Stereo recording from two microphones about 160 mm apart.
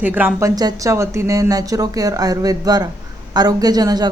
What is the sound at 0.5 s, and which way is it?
Speech, 20° right (ahead or behind).